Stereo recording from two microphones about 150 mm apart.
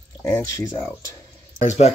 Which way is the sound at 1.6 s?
50° left (ahead or behind).